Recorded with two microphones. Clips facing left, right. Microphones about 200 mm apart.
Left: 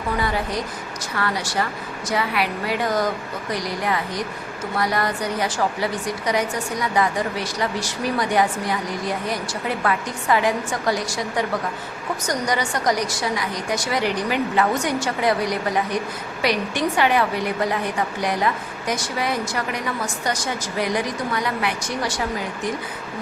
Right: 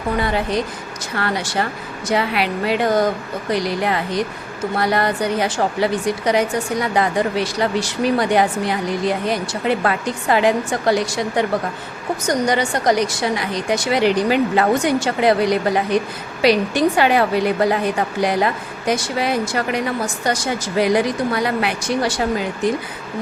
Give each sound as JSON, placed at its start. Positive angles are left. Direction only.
{"t": 0.2, "sound": "a woman's voice", "side_deg": -25}